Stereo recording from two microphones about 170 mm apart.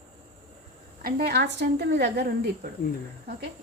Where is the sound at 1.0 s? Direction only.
65° right (ahead or behind).